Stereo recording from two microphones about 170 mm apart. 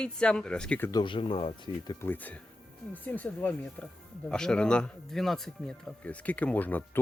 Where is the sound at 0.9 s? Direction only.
30° left (ahead or behind).